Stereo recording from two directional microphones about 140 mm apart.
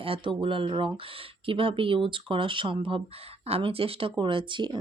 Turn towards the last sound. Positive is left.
turn(degrees=-35)  # may be behind; listen again after turning